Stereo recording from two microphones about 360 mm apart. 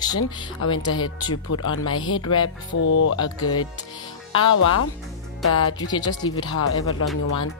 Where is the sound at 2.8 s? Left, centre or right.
Left.